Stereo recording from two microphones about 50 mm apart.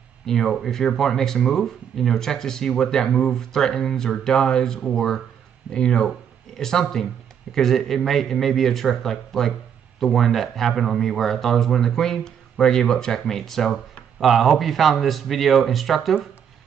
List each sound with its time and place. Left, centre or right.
0.3 s speech: centre
14.2 s speech: centre